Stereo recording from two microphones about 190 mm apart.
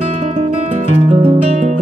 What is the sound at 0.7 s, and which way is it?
Music, 35° right (ahead or behind).